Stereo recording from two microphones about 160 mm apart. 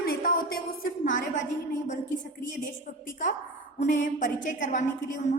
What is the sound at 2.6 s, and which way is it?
A woman's voice, 55° left (ahead or behind).